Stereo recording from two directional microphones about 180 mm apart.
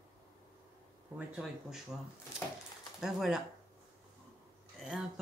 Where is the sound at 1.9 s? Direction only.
5° right (ahead or behind).